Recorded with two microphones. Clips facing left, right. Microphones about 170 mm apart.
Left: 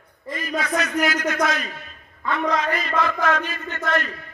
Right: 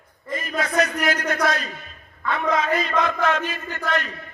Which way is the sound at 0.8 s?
35° right (ahead or behind).